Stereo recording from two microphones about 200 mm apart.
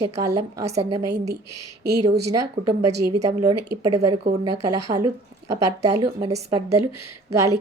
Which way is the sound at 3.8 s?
20° right (ahead or behind).